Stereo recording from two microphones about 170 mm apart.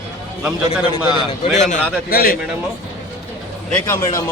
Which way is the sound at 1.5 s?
45° left (ahead or behind).